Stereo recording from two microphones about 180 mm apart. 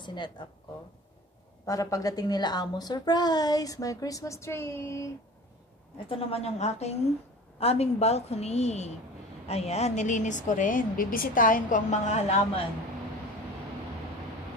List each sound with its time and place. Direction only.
0.0 s speech: 25° left (ahead or behind)
1.7 s a woman's voice: 20° left (ahead or behind)
6.0 s a woman's voice: 35° left (ahead or behind)